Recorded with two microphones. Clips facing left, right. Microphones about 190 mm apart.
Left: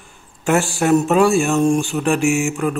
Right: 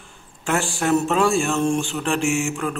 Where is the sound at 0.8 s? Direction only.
15° left (ahead or behind).